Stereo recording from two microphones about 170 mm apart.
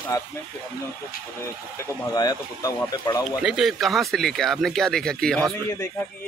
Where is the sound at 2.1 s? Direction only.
25° left (ahead or behind).